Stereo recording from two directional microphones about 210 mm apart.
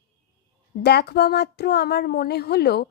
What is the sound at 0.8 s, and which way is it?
Speech, 50° left (ahead or behind).